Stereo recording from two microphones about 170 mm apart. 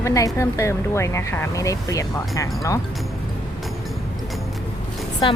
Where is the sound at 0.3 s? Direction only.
15° left (ahead or behind).